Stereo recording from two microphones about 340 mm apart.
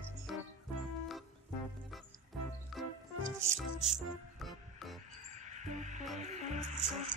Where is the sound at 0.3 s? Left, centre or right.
Centre.